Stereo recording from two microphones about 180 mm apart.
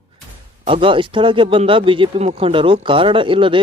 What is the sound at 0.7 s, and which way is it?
Speech, 30° right (ahead or behind).